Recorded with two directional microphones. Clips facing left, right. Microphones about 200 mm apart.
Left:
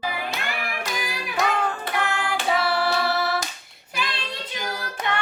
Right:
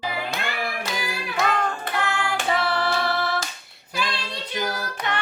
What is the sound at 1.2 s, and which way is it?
Music, 5° left (ahead or behind).